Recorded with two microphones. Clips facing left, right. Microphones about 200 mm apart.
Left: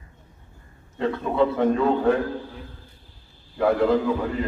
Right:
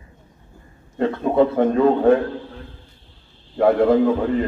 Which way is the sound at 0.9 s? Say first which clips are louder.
Right 5 dB; 50° right (ahead or behind).